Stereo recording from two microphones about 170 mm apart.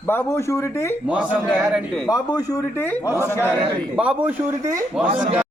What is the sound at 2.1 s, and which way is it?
A man's voice, 20° left (ahead or behind).